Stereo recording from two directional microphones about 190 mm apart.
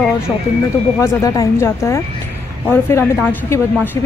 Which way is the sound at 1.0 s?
20° left (ahead or behind).